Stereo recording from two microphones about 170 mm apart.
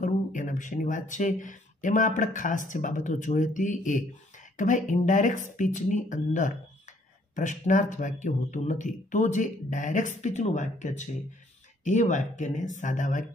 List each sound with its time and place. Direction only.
0.0 s speech: 50° left (ahead or behind)